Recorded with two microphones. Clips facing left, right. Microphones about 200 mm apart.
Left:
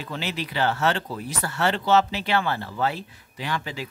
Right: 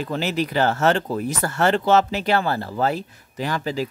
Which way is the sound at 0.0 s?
45° right (ahead or behind).